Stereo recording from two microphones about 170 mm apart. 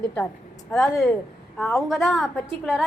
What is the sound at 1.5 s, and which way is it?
Speech, 15° left (ahead or behind).